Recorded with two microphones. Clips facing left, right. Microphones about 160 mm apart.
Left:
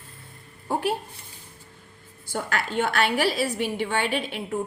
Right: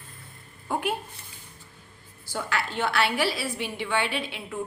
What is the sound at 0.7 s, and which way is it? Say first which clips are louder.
Speech: left 3 dB; 35° left (ahead or behind).